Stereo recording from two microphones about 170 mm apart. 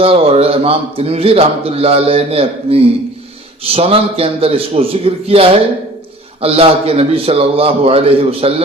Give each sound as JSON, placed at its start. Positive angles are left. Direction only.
{"t": 0.0, "sound": "a man's voice", "side_deg": -35}